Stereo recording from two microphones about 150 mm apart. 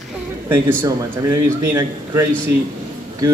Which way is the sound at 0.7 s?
20° right (ahead or behind).